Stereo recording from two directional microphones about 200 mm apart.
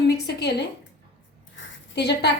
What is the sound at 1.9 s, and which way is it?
Speech, 55° left (ahead or behind).